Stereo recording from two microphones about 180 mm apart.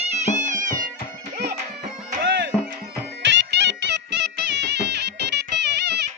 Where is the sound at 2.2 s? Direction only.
80° right.